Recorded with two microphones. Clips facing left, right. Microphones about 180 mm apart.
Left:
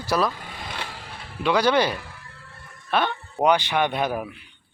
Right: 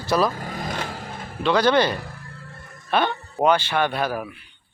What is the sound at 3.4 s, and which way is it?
Speech, 15° left (ahead or behind).